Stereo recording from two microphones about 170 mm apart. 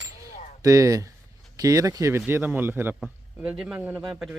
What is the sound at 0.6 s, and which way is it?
A man's voice, 20° right (ahead or behind).